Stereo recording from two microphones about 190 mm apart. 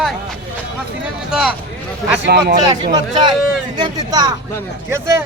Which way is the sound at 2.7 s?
20° right (ahead or behind).